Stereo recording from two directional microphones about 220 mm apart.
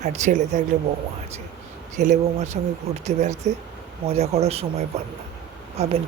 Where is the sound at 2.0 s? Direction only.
30° right (ahead or behind).